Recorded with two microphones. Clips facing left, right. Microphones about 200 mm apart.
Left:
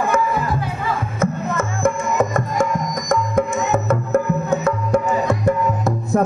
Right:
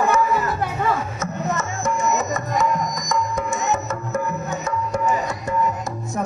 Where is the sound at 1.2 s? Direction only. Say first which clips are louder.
Left 4 dB; 55° left (ahead or behind).